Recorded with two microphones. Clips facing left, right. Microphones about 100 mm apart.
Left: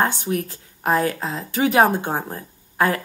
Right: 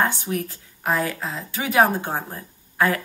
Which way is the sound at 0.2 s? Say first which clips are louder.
Left 3 dB; 40° left (ahead or behind).